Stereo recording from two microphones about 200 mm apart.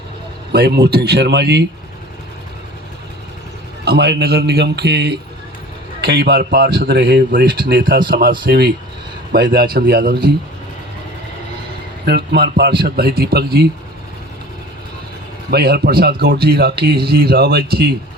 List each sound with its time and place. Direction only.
0.5 s a man's voice: 55° right (ahead or behind)
3.8 s a man's voice: 55° right (ahead or behind)
7.4 s speech: 25° right (ahead or behind)
7.7 s a man's voice: 50° right (ahead or behind)
12.0 s a man's voice: 55° right (ahead or behind)
15.4 s a man's voice: 50° right (ahead or behind)